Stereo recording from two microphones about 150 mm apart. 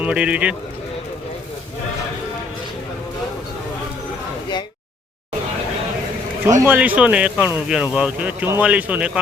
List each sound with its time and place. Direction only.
0.0 s speech: 10° right (ahead or behind)
6.6 s speech: 10° right (ahead or behind)